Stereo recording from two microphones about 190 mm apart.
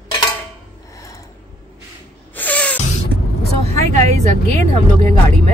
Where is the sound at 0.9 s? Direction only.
15° left (ahead or behind).